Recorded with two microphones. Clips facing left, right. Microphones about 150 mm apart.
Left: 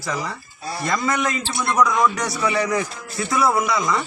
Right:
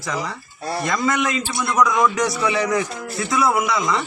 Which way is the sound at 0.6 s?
60° right (ahead or behind).